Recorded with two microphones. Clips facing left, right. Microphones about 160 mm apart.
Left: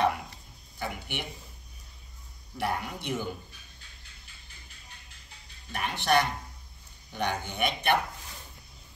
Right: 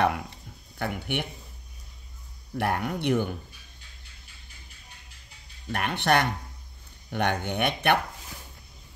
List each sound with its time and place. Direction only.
0.7 s speech: 60° right (ahead or behind)
2.5 s speech: 60° right (ahead or behind)
5.7 s speech: 60° right (ahead or behind)